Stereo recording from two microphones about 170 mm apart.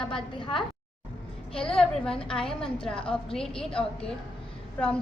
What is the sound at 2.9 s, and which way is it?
Speech, 30° left (ahead or behind).